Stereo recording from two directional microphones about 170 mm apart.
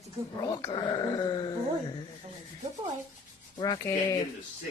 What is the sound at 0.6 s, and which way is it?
Speech, 25° left (ahead or behind).